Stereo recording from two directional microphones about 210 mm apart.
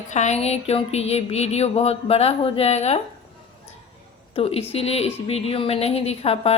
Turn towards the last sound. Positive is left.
turn(degrees=30)  # may be behind; listen again after turning